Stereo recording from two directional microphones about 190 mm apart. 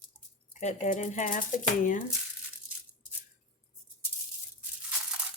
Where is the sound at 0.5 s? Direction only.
40° left (ahead or behind).